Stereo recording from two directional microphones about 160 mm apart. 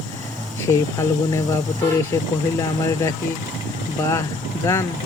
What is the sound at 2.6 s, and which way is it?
Speech, 20° left (ahead or behind).